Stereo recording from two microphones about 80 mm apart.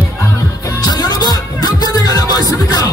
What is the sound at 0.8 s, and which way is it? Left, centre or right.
Music, left.